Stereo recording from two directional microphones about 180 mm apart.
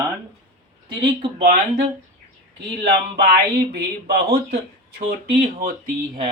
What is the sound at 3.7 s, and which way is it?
Speech, 60° right (ahead or behind).